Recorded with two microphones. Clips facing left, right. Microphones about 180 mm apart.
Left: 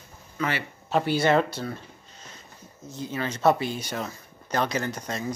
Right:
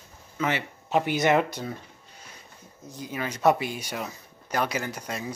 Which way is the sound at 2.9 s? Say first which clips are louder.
Left 2 dB; 10° right (ahead or behind).